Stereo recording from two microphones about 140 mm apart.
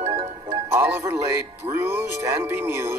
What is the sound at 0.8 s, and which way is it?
Speech, 20° right (ahead or behind).